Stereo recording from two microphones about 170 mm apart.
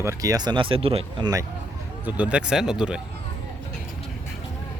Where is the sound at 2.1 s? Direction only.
5° right (ahead or behind).